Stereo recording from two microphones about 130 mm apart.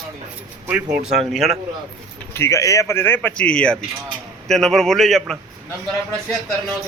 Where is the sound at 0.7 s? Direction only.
10° right (ahead or behind).